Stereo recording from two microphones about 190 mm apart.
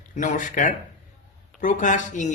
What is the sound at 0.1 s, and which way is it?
Speech, 40° left (ahead or behind).